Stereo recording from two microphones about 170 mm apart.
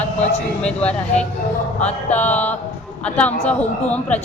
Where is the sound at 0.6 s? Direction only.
5° left (ahead or behind).